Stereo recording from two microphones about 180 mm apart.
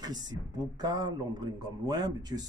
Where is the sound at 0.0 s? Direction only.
20° right (ahead or behind).